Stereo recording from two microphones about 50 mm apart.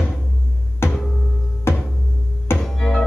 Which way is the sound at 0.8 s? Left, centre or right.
Left.